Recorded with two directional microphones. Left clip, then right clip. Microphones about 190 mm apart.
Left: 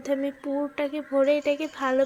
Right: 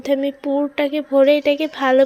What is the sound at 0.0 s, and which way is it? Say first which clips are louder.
Speech: right 8 dB; 20° right (ahead or behind).